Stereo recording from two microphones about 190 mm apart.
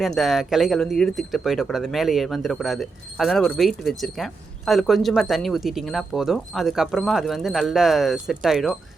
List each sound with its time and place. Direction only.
0.2 s speech: centre (ahead or behind)